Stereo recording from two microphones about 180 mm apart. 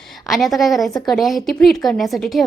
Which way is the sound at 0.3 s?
Centre (ahead or behind).